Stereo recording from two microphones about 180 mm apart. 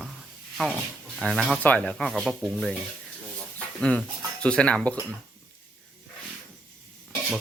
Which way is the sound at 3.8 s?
5° left (ahead or behind).